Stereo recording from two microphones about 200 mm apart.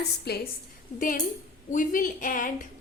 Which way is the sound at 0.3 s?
55° left (ahead or behind).